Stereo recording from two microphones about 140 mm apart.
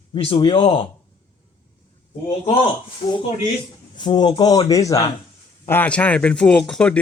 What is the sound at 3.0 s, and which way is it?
Speech, 35° left (ahead or behind).